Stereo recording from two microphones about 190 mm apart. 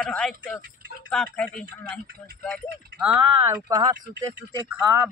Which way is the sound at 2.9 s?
10° right (ahead or behind).